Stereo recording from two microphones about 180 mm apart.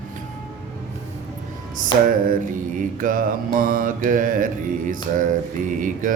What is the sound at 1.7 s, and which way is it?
Mantra, 50° right (ahead or behind).